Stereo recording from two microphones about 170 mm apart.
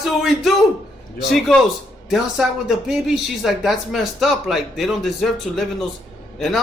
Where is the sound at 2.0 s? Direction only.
Centre (ahead or behind).